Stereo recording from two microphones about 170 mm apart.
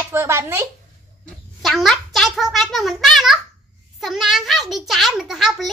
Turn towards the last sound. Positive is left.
turn(degrees=0)  # may be behind; listen again after turning